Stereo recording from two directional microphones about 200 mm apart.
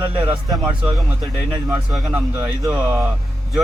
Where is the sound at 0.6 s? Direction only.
5° right (ahead or behind).